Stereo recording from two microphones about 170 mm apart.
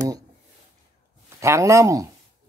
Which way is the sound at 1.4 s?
15° right (ahead or behind).